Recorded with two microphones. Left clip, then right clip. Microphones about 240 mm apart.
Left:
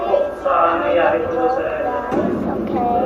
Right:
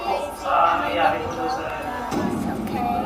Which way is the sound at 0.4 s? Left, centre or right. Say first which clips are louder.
Even; right.